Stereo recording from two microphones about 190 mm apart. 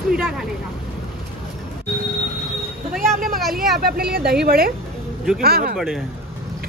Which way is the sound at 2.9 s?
50° right (ahead or behind).